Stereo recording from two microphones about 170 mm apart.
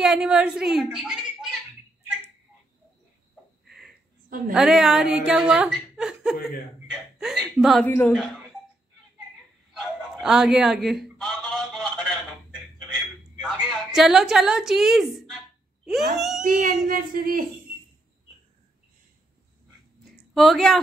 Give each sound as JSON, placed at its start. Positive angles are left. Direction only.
{"t": 0.0, "sound": "speech", "side_deg": -5}
{"t": 3.6, "sound": "a sound", "side_deg": 0}
{"t": 4.5, "sound": "speech", "side_deg": 0}
{"t": 7.8, "sound": "a woman's voice", "side_deg": 10}
{"t": 9.8, "sound": "a sound", "side_deg": -5}
{"t": 16.4, "sound": "speech", "side_deg": -55}
{"t": 20.3, "sound": "a woman's voice", "side_deg": 0}